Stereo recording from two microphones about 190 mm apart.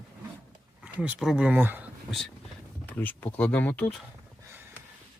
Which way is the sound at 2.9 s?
10° left (ahead or behind).